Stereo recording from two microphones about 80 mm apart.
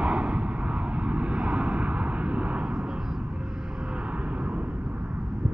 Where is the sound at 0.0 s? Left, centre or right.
Centre.